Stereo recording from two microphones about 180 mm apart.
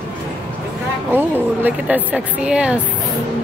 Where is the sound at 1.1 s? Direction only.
10° right (ahead or behind).